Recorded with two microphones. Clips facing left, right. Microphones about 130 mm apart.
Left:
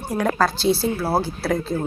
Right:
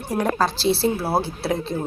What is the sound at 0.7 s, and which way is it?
Speech, 25° right (ahead or behind).